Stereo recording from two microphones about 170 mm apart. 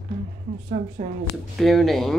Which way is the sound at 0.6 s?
35° right (ahead or behind).